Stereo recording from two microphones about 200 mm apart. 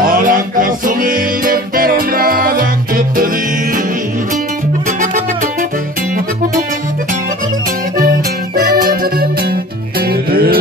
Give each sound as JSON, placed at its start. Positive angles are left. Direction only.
{"t": 0.0, "sound": "music", "side_deg": -45}
{"t": 4.8, "sound": "music", "side_deg": -40}
{"t": 8.8, "sound": "music", "side_deg": -50}